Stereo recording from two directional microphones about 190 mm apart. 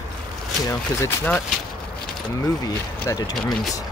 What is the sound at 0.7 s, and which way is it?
Speech, 10° left (ahead or behind).